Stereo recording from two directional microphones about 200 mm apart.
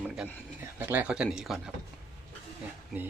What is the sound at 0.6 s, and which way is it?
Speech, 10° right (ahead or behind).